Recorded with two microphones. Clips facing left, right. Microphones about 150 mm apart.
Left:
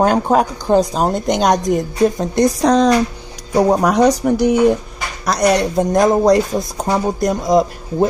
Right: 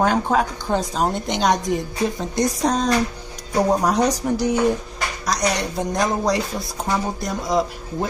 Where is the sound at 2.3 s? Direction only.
75° left (ahead or behind).